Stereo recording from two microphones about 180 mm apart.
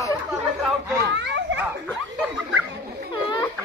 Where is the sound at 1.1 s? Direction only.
90° right.